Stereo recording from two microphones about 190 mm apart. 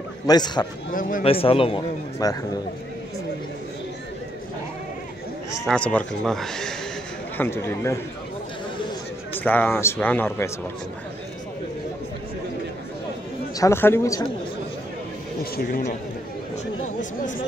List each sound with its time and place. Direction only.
0.3 s speech: 20° left (ahead or behind)
0.9 s a man's voice: 45° left (ahead or behind)
1.2 s speech: 30° left (ahead or behind)
5.7 s speech: 5° left (ahead or behind)
9.4 s speech: 10° left (ahead or behind)
13.6 s speech: 15° left (ahead or behind)
15.5 s a man's voice: 50° left (ahead or behind)